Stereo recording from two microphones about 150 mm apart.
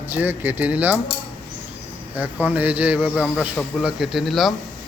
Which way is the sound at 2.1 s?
10° right (ahead or behind).